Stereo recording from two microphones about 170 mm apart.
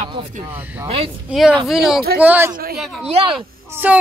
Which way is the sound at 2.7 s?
Centre (ahead or behind).